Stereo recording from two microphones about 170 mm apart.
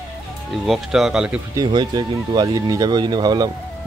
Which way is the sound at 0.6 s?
Centre (ahead or behind).